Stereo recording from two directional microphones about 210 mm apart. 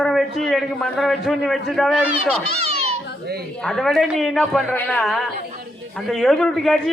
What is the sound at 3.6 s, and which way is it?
A man's voice, centre (ahead or behind).